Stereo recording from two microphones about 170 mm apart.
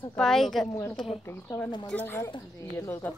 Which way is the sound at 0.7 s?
20° left (ahead or behind).